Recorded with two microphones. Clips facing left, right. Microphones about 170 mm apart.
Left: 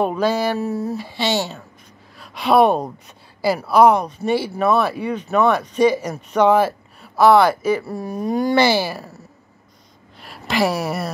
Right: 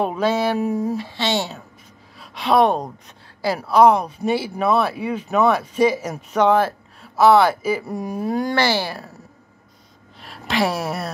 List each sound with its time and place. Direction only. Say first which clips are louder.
0.0 s speech: left 1 dB; centre (ahead or behind)
0.6 s speech: right 2 dB; 15° right (ahead or behind)
0.9 s speech: left 1 dB; 5° left (ahead or behind)
7.8 s speech: even; 15° right (ahead or behind)
8.3 s speech: left 4 dB; centre (ahead or behind)
8.5 s speech: left 4 dB; 15° left (ahead or behind)
10.2 s speech: left 2 dB; centre (ahead or behind)